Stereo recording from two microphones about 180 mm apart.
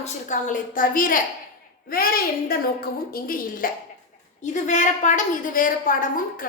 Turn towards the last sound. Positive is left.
turn(degrees=50)  # may be behind; listen again after turning